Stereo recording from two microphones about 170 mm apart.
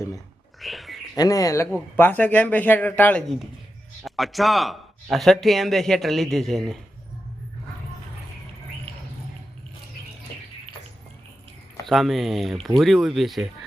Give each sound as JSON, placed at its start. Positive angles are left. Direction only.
{"t": 0.6, "sound": "a sound", "side_deg": 0}
{"t": 1.1, "sound": "a man's voice", "side_deg": 20}
{"t": 11.9, "sound": "a man's voice", "side_deg": 0}